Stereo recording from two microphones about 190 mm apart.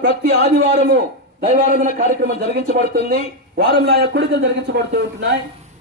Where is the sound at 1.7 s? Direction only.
40° right (ahead or behind).